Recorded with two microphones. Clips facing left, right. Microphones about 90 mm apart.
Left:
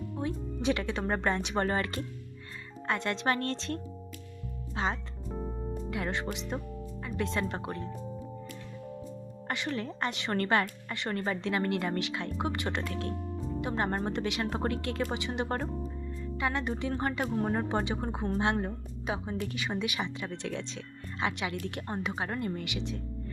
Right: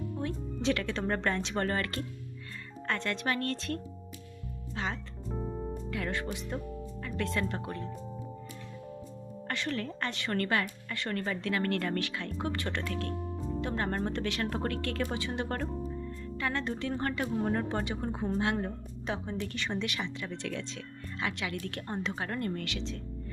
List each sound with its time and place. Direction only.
0.2 s speech: 15° left (ahead or behind)
3.2 s a woman's voice: 30° left (ahead or behind)
9.5 s a woman's voice: 15° left (ahead or behind)
10.9 s a woman's voice: 20° left (ahead or behind)